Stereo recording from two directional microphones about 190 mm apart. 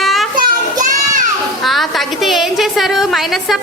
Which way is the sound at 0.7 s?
40° right (ahead or behind).